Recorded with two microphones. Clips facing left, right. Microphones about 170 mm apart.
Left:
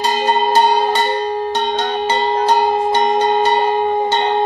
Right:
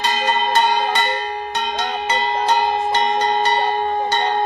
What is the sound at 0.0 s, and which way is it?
Cowbell, 30° left (ahead or behind).